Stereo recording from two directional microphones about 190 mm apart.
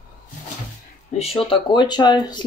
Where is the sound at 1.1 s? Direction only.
30° left (ahead or behind).